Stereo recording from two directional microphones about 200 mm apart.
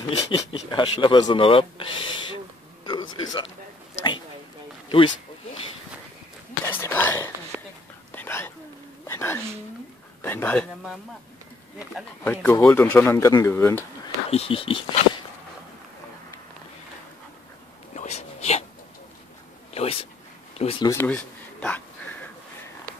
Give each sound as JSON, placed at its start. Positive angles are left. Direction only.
{"t": 0.1, "sound": "speech", "side_deg": 25}
{"t": 4.8, "sound": "a sound", "side_deg": 25}
{"t": 6.7, "sound": "whispering", "side_deg": 10}
{"t": 9.0, "sound": "a sound", "side_deg": 10}
{"t": 10.2, "sound": "speech", "side_deg": 10}
{"t": 12.2, "sound": "speech", "side_deg": 10}
{"t": 14.3, "sound": "speech", "side_deg": 30}
{"t": 17.9, "sound": "a sound", "side_deg": 35}
{"t": 19.7, "sound": "speech", "side_deg": 30}
{"t": 20.9, "sound": "a man's voice", "side_deg": 10}